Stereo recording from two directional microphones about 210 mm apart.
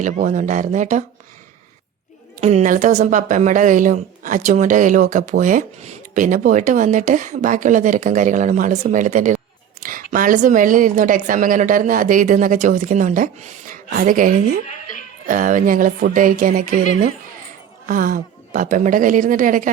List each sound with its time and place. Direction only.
0.0 s a woman's voice: 35° right (ahead or behind)
2.4 s a woman's voice: 35° right (ahead or behind)